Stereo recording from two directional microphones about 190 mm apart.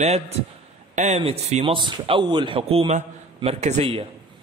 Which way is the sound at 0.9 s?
35° right (ahead or behind).